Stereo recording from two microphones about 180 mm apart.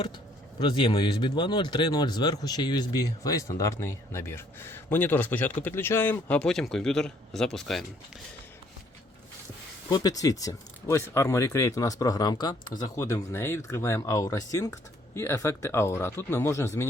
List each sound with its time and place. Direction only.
0.6 s speech: 25° left (ahead or behind); by 7.9 s centre (ahead or behind)
9.9 s speech: 20° left (ahead or behind)